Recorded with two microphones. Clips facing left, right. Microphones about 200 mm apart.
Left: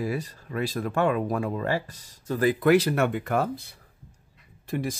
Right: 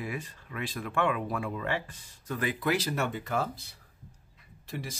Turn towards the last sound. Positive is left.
turn(degrees=50)  # may be behind; listen again after turning